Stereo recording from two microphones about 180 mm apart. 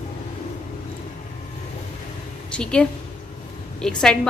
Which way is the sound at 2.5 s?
5° left (ahead or behind).